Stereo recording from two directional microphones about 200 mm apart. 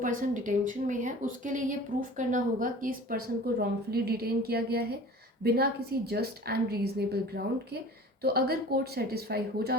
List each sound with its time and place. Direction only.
0.0 s a woman's voice: 40° right (ahead or behind)